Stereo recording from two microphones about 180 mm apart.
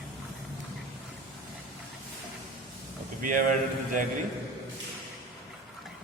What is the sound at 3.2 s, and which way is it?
Speech, 45° right (ahead or behind).